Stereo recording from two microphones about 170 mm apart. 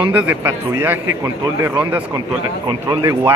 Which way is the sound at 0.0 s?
10° right (ahead or behind).